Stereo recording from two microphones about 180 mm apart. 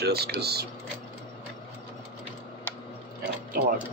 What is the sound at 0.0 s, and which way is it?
Speech, 60° right (ahead or behind).